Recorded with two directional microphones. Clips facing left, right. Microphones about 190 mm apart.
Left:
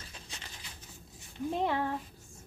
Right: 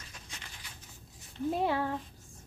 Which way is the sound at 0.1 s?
30° left (ahead or behind).